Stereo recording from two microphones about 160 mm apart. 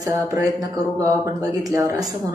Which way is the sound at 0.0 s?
20° right (ahead or behind).